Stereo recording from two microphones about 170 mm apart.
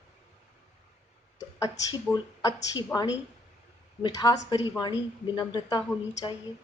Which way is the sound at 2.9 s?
5° left (ahead or behind).